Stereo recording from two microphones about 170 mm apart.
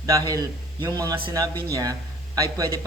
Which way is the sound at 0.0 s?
20° right (ahead or behind).